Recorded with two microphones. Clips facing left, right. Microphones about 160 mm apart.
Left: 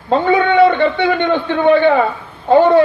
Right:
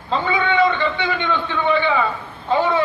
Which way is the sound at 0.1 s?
50° left (ahead or behind).